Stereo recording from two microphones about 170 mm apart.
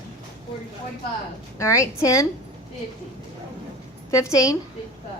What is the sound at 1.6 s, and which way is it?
Speech, 15° left (ahead or behind).